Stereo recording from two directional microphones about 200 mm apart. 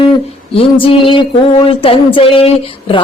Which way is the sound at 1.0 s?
25° left (ahead or behind).